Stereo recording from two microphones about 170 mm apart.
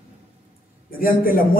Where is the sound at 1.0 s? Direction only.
55° left (ahead or behind).